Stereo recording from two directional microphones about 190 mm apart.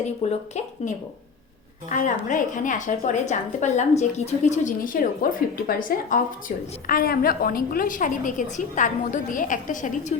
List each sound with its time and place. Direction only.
0.2 s a woman's voice: 35° left (ahead or behind)